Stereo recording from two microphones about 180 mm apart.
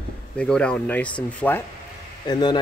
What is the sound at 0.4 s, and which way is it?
Speech, 5° left (ahead or behind).